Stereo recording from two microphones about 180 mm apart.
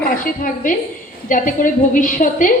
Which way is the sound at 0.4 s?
50° left (ahead or behind).